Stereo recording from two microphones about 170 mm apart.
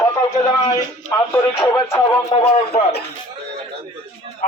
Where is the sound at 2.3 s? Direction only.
30° left (ahead or behind).